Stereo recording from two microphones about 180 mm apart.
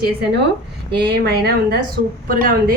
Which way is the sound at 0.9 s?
65° right (ahead or behind).